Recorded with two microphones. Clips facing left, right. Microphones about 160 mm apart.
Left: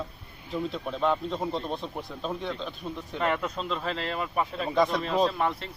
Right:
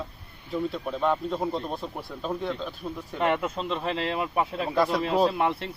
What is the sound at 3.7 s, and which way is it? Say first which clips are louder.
Speech: right 4 dB; 20° right (ahead or behind).